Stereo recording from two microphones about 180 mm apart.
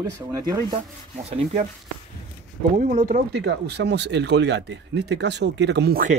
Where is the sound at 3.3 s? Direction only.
70° right (ahead or behind).